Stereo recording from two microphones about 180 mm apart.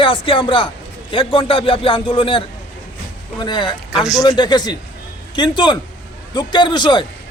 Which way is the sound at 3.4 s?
25° left (ahead or behind).